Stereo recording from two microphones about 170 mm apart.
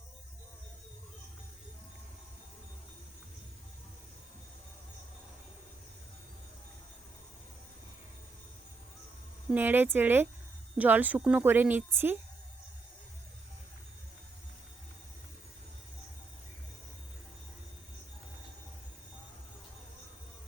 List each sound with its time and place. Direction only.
9.5 s a woman's voice: 10° right (ahead or behind)